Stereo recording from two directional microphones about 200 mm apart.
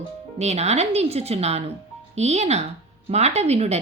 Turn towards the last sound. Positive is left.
turn(degrees=-30)  # may be behind; listen again after turning